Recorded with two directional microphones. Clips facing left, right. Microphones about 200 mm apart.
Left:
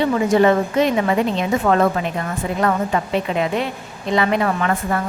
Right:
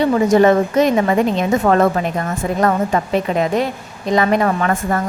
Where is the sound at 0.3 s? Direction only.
45° right (ahead or behind).